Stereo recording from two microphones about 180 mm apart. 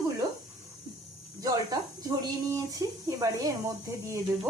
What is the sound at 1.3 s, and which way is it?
Speech, 20° right (ahead or behind).